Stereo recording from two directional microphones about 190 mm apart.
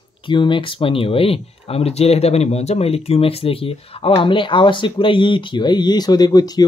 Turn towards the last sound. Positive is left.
turn(degrees=20)  # may be behind; listen again after turning